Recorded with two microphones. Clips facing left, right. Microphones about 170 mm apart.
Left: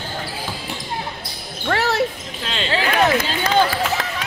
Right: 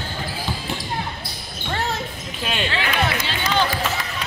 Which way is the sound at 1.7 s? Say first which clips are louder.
Left 7 dB; 75° left (ahead or behind).